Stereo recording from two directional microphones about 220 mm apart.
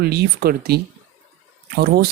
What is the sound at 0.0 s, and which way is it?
Speech, 45° right (ahead or behind).